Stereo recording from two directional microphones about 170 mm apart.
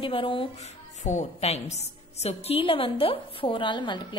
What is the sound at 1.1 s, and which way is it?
A woman's voice, 40° left (ahead or behind).